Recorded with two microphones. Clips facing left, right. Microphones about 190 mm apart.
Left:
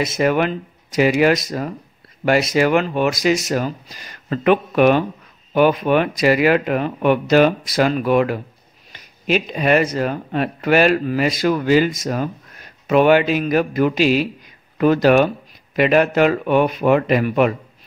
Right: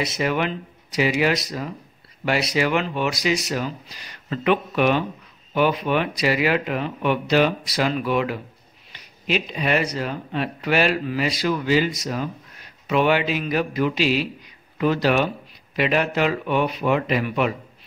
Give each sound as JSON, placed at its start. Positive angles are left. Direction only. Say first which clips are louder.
{"t": 0.0, "sound": "speech", "louder": "left 6 dB", "side_deg": 50}